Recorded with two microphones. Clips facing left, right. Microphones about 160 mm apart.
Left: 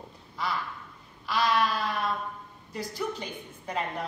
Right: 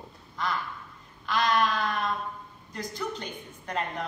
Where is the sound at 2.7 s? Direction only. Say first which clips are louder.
Left 1 dB; 5° left (ahead or behind).